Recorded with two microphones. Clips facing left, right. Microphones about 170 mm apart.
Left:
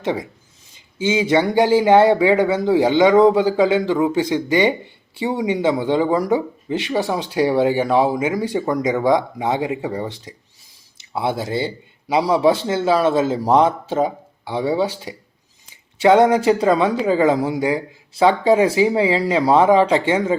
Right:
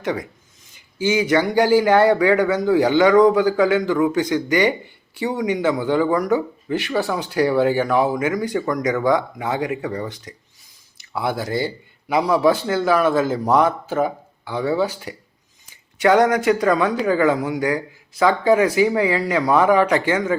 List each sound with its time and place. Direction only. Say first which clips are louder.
0.0 s speech: left 2 dB; 25° left (ahead or behind)